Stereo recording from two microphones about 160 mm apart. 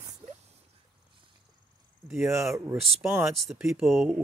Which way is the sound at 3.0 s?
15° right (ahead or behind).